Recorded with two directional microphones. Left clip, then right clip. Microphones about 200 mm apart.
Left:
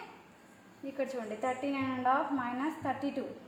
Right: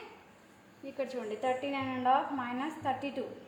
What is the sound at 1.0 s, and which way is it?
A woman's voice, 10° left (ahead or behind).